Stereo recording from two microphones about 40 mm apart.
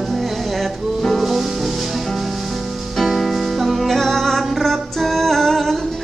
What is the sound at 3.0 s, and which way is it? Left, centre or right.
Music, centre.